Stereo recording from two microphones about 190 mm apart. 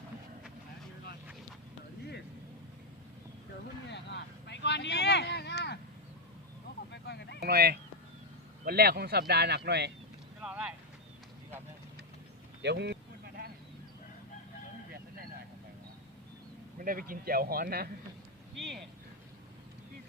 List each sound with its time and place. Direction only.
3.8 s vehicle: 65° left (ahead or behind)
6.9 s a sound: 65° left (ahead or behind)
7.3 s speech: 55° right (ahead or behind)
10.4 s vehicle: 5° right (ahead or behind)
12.6 s a sound: 65° right (ahead or behind)
16.7 s speech: 50° right (ahead or behind)